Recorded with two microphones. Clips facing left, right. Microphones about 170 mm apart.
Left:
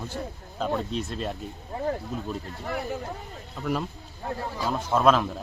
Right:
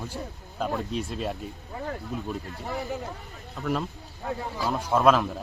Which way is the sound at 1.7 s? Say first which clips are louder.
Left 6 dB; 30° left (ahead or behind).